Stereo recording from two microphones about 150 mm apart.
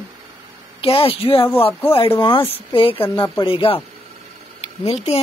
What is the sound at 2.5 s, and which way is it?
A man's voice, 40° left (ahead or behind).